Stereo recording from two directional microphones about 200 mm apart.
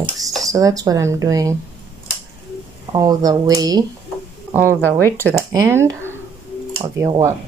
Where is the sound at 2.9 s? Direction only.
20° right (ahead or behind).